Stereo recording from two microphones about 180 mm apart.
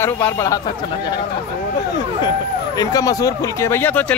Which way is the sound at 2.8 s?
20° left (ahead or behind).